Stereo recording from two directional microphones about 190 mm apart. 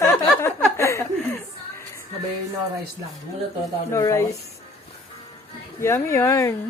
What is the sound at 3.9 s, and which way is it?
Speech, 15° left (ahead or behind).